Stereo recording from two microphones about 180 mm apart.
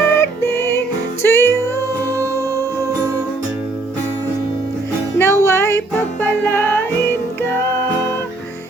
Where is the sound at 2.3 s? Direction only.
15° left (ahead or behind).